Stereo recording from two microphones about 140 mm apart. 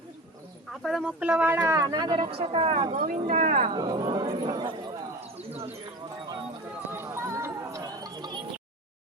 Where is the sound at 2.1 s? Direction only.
45° right (ahead or behind); by 3.7 s 65° right (ahead or behind).